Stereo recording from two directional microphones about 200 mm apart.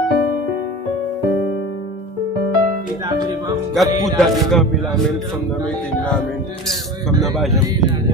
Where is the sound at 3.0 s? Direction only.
20° right (ahead or behind).